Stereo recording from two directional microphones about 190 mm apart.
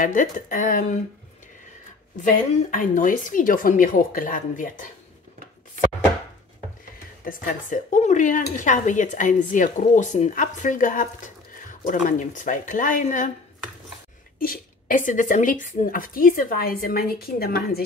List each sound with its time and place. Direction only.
0.0 s speech: 45° left (ahead or behind)
2.1 s speech: 40° left (ahead or behind)
7.2 s speech: 45° left (ahead or behind)
14.4 s speech: 45° left (ahead or behind)